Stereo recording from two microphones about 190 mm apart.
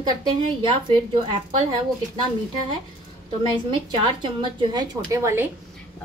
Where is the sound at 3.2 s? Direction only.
25° right (ahead or behind).